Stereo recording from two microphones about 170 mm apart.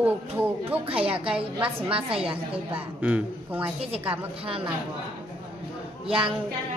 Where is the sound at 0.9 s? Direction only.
35° right (ahead or behind).